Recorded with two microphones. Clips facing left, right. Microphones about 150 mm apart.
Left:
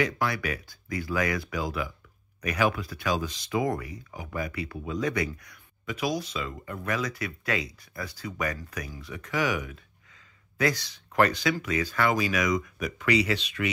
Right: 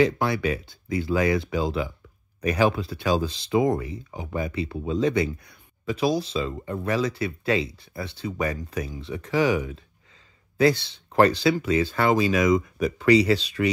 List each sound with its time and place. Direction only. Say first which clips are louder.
0.0 s speech: right 6 dB; 25° right (ahead or behind)